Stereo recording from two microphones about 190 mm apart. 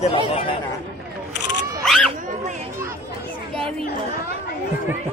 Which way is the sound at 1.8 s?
5° left (ahead or behind).